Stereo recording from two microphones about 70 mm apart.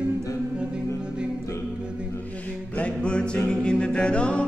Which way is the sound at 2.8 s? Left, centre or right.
Centre.